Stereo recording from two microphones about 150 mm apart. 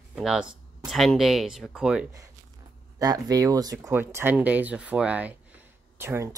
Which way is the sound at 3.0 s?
25° right (ahead or behind).